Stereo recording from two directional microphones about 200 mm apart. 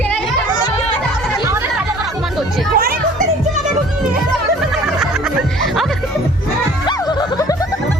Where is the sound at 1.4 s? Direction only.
15° right (ahead or behind).